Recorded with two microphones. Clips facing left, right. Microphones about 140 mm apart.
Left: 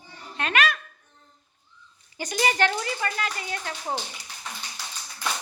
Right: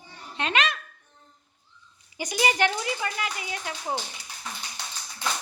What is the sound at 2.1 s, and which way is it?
Speech, 10° right (ahead or behind).